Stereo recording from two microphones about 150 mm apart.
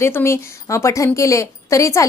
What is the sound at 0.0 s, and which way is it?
A woman's voice, 15° left (ahead or behind).